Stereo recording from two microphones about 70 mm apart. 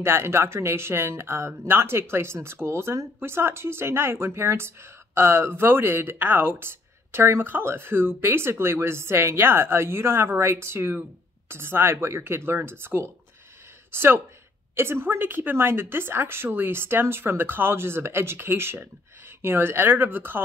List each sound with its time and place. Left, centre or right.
0.0 s speech: right